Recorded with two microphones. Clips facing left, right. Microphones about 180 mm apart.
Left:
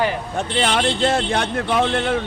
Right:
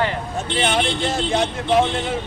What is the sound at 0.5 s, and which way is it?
Speech, 65° left (ahead or behind).